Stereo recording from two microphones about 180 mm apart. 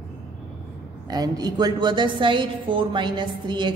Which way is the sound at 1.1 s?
20° right (ahead or behind).